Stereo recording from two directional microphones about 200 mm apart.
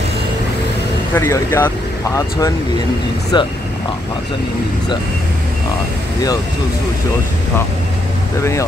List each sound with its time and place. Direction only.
1.1 s speech: 15° left (ahead or behind)
3.3 s speech: 20° left (ahead or behind)